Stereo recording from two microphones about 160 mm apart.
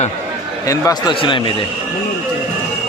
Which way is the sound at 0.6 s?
25° left (ahead or behind).